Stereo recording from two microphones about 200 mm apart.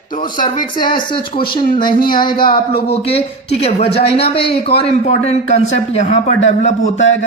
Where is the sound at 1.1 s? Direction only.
25° left (ahead or behind).